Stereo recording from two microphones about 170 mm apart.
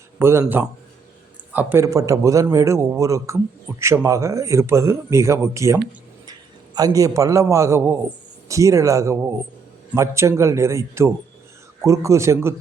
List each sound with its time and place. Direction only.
0.2 s a man's voice: 15° right (ahead or behind)